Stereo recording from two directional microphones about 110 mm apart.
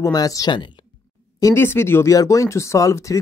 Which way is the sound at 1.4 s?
25° left (ahead or behind).